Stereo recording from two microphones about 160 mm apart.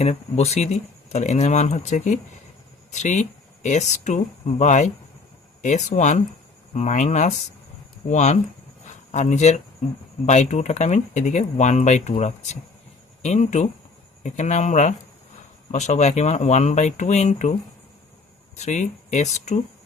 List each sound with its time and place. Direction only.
0.0 s speech: 40° left (ahead or behind)
18.6 s speech: 45° left (ahead or behind)